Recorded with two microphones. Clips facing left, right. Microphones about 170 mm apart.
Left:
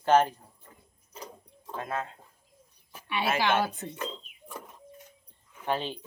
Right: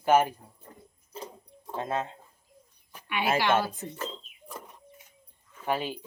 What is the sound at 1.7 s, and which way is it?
Speech, 25° right (ahead or behind).